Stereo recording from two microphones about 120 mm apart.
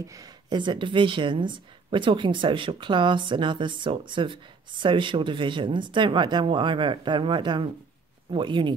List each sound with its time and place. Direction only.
0.0 s a woman's voice: 30° right (ahead or behind)